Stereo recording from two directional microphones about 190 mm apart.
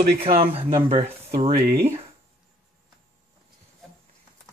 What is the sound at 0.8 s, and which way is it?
Speech, 30° right (ahead or behind).